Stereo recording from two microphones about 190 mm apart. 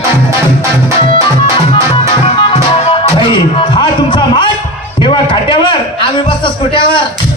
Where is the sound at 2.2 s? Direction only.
30° left (ahead or behind).